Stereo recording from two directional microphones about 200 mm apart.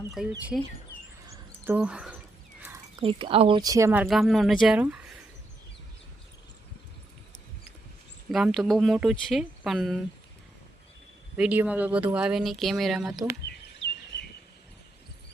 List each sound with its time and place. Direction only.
0.1 s speech: centre (ahead or behind)
1.6 s speech: 5° right (ahead or behind)
2.6 s a sound: 10° right (ahead or behind)
3.0 s speech: 25° right (ahead or behind)
4.0 s speech: centre (ahead or behind)
8.3 s speech: centre (ahead or behind)
11.3 s speech: 5° right (ahead or behind)